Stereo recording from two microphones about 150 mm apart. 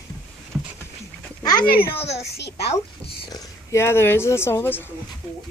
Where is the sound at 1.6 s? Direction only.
80° left.